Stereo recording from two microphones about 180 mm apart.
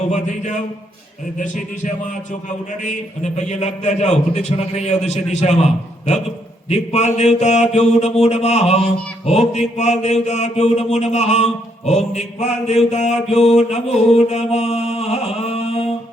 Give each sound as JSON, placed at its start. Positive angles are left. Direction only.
{"t": 2.8, "sound": "mantra", "side_deg": 40}
{"t": 6.7, "sound": "mantra", "side_deg": 35}